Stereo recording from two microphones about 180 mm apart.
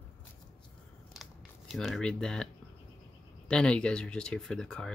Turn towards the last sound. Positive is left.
turn(degrees=5)  # may be behind; listen again after turning